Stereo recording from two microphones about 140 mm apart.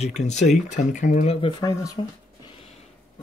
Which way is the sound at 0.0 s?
55° left (ahead or behind).